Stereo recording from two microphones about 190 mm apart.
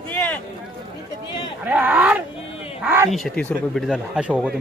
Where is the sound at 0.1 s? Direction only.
10° left (ahead or behind).